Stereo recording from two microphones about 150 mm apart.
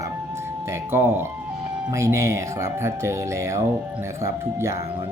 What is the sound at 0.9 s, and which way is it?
Speech, 15° right (ahead or behind).